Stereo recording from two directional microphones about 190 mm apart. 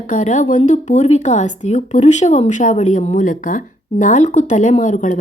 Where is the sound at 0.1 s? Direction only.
40° left (ahead or behind).